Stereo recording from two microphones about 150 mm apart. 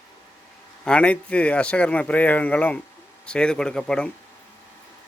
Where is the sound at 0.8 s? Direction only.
5° left (ahead or behind).